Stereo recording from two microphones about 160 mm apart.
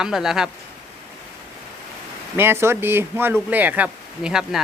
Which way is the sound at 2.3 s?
15° right (ahead or behind).